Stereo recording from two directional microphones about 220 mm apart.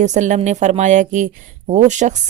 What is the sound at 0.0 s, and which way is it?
Speech, 35° right (ahead or behind).